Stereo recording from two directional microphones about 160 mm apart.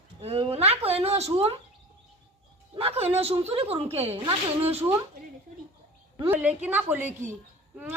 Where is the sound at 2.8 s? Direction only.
40° right (ahead or behind).